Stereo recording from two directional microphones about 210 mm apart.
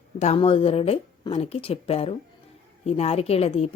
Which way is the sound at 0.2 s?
30° left (ahead or behind).